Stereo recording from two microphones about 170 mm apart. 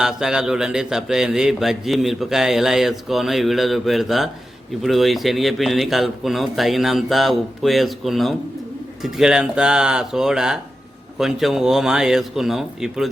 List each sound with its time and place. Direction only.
0.0 s a man's voice: 5° right (ahead or behind)